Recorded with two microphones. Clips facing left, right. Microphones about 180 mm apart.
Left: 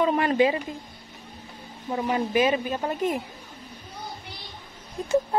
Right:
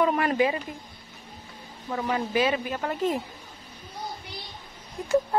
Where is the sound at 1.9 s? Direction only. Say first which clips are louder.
Left 2 dB; 20° left (ahead or behind).